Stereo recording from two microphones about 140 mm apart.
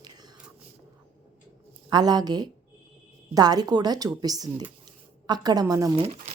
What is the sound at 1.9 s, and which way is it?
A woman's voice, 30° right (ahead or behind).